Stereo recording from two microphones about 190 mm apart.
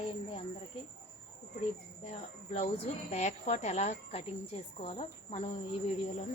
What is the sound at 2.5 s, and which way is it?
Speech, 35° left (ahead or behind).